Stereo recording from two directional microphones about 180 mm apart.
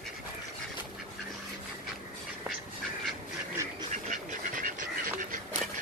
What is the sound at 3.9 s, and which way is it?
Duck, 45° right (ahead or behind).